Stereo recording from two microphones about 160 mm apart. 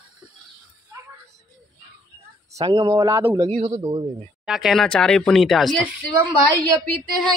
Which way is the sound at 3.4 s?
35° right (ahead or behind).